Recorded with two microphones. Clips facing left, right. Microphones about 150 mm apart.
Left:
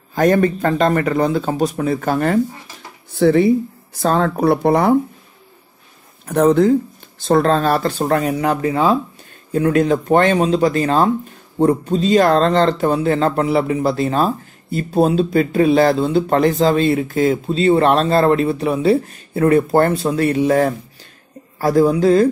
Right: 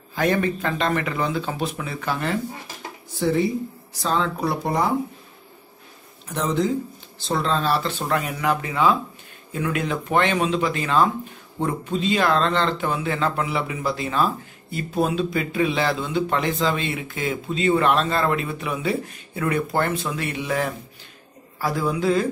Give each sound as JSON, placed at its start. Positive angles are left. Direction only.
{"t": 0.1, "sound": "a man's voice", "side_deg": 45}
{"t": 3.2, "sound": "speech", "side_deg": 65}
{"t": 4.0, "sound": "speech", "side_deg": 50}
{"t": 6.2, "sound": "a man's voice", "side_deg": 55}